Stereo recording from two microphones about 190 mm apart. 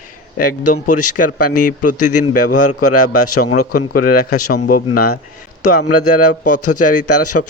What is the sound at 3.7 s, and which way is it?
A man's voice, 50° left (ahead or behind).